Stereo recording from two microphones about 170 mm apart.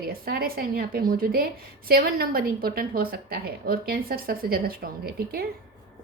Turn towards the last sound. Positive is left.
turn(degrees=-65)  # may be behind; listen again after turning